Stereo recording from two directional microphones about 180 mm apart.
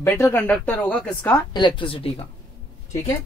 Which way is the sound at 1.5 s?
25° left (ahead or behind).